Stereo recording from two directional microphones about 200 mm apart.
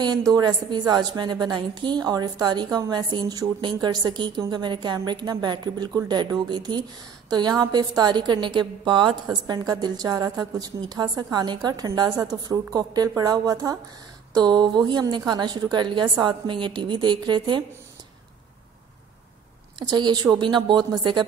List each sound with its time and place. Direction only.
0.0 s a woman's voice: 20° right (ahead or behind)
19.9 s a woman's voice: 20° right (ahead or behind)